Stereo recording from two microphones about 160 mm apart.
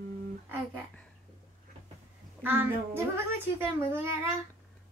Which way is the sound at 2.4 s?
10° right (ahead or behind).